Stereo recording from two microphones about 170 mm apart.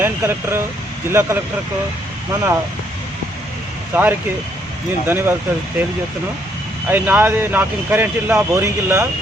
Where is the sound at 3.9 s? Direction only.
10° right (ahead or behind).